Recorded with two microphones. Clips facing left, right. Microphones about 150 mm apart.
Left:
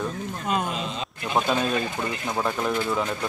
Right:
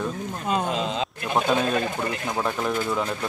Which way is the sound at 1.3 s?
Centre (ahead or behind).